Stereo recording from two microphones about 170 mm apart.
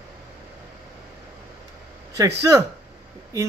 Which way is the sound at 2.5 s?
20° right (ahead or behind).